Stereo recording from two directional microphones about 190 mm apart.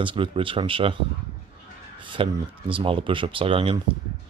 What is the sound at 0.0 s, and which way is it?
Speech, 25° right (ahead or behind).